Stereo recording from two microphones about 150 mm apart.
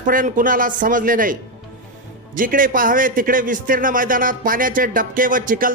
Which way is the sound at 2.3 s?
65° right (ahead or behind).